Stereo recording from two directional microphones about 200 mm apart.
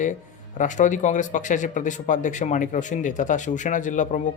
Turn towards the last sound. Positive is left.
turn(degrees=40)  # may be behind; listen again after turning